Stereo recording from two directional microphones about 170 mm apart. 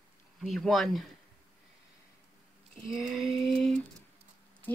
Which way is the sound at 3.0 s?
Centre (ahead or behind).